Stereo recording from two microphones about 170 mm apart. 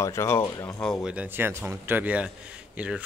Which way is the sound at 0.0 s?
15° left (ahead or behind).